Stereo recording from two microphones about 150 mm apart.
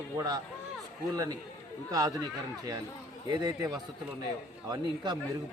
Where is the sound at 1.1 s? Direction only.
25° right (ahead or behind).